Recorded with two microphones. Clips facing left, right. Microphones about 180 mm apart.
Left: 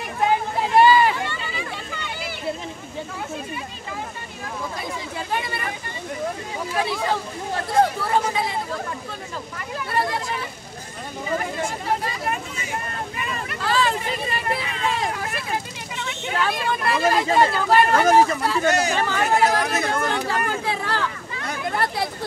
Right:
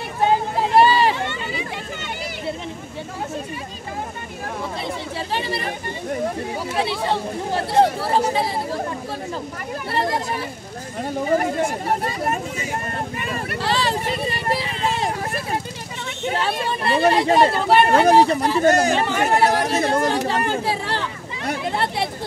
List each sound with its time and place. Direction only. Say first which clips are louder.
0.2 s a sound: right 2 dB; 30° right (ahead or behind)
5.4 s speech: right 4 dB; 30° right (ahead or behind)
6.8 s speech: right 1 dB; 30° right (ahead or behind)
9.9 s speech: right 2 dB; 35° right (ahead or behind)
11.2 s speech: right 5 dB; 45° right (ahead or behind)
13.6 s vehicle: left 1 dB; 30° right (ahead or behind)
16.3 s speech: left 1 dB; 30° right (ahead or behind); by 18.9 s 45° right (ahead or behind)
18.9 s speech: right 2 dB; 20° right (ahead or behind)